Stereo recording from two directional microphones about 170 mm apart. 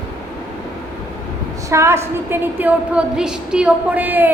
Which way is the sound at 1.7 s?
15° right (ahead or behind).